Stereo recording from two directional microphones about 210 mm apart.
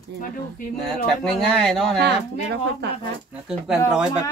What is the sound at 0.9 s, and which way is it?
Speech, 5° left (ahead or behind).